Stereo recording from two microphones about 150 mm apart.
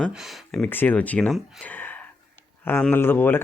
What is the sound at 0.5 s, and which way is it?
Speech, 10° left (ahead or behind).